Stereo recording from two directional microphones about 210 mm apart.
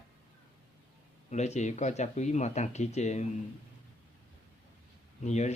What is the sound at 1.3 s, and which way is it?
Speech, 35° left (ahead or behind).